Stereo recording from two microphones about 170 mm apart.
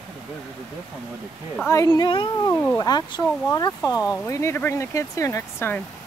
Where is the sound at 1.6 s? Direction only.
20° left (ahead or behind).